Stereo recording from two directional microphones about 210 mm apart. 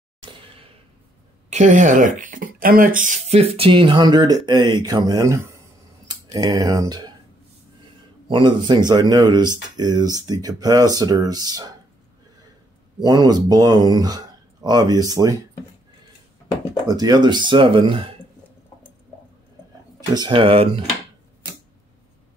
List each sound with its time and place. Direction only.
0.2 s a sound: 25° right (ahead or behind)
1.5 s speech: 35° right (ahead or behind); by 7.2 s 20° right (ahead or behind)
8.3 s speech: 20° right (ahead or behind)
13.0 s speech: 20° right (ahead or behind)
16.8 s speech: 20° right (ahead or behind)
20.2 s speech: 25° right (ahead or behind)